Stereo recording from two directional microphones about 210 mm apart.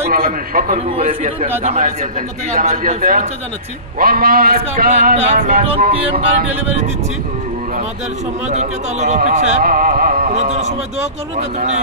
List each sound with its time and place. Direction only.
0.1 s speech: 45° right (ahead or behind)
8.5 s speech: 35° right (ahead or behind)